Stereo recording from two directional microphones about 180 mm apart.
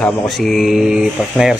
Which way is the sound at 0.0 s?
Centre (ahead or behind).